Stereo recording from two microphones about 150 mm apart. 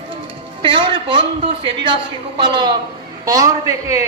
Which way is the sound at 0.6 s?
35° right (ahead or behind).